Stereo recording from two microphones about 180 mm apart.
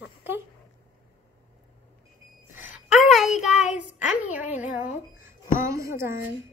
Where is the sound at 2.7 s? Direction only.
Centre (ahead or behind).